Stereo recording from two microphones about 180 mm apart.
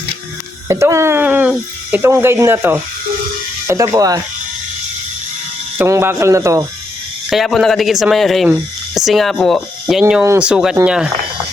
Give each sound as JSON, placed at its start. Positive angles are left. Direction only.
{"t": 0.7, "sound": "speech", "side_deg": -15}
{"t": 5.7, "sound": "speech", "side_deg": -15}
{"t": 7.3, "sound": "speech", "side_deg": 0}
{"t": 10.0, "sound": "speech", "side_deg": -10}